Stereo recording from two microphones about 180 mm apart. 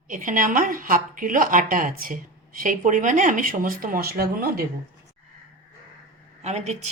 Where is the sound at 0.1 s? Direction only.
50° right (ahead or behind).